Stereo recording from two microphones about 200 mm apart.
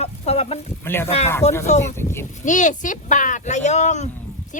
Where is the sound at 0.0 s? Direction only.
30° left (ahead or behind).